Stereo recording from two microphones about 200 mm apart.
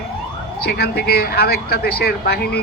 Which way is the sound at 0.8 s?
50° left (ahead or behind).